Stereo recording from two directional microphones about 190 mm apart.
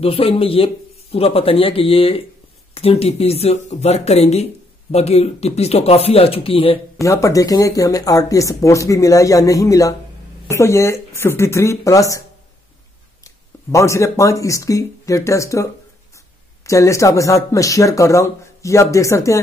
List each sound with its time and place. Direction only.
0.0 s speech: 30° left (ahead or behind)
7.0 s speech: 15° left (ahead or behind)
13.2 s speech: 15° left (ahead or behind)